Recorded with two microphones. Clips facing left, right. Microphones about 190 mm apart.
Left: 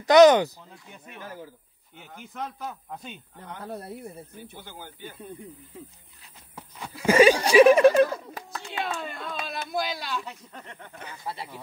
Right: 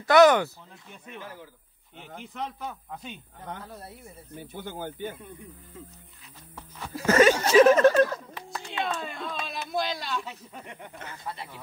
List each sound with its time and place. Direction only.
0.0 s speech: 20° left (ahead or behind)
2.2 s speech: centre (ahead or behind)
3.6 s speech: 60° left (ahead or behind)
4.6 s speech: 50° right (ahead or behind)
7.0 s speech: 10° left (ahead or behind)
8.5 s speech: centre (ahead or behind)
10.6 s speech: 15° right (ahead or behind)
11.2 s speech: 30° left (ahead or behind)